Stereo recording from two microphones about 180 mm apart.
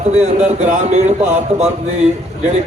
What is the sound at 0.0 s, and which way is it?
Speech, 35° right (ahead or behind).